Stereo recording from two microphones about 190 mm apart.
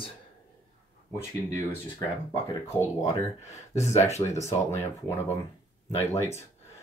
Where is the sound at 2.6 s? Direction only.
15° left (ahead or behind).